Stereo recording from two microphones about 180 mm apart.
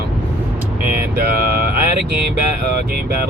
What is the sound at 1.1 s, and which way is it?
Speech, 60° right (ahead or behind).